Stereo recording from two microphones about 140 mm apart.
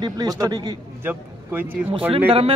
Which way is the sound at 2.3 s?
45° right (ahead or behind).